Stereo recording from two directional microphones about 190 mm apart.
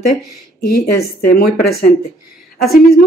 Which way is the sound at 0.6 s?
50° left (ahead or behind).